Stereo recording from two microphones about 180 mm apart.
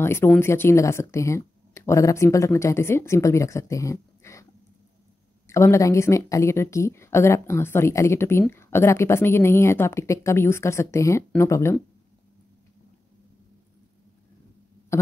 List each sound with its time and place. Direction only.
0.0 s a woman's voice: 15° left (ahead or behind)
5.5 s a woman's voice: 15° left (ahead or behind)